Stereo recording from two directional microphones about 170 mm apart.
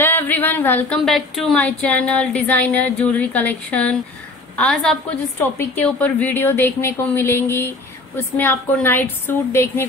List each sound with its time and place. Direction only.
0.0 s speech: 10° left (ahead or behind)